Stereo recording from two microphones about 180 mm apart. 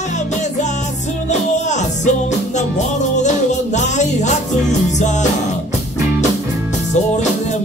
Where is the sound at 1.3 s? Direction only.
40° left (ahead or behind).